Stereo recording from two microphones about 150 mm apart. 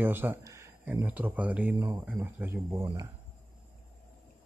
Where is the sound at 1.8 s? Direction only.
20° right (ahead or behind).